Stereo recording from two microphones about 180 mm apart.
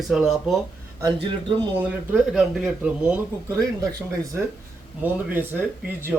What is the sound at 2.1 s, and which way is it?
Speech, centre (ahead or behind).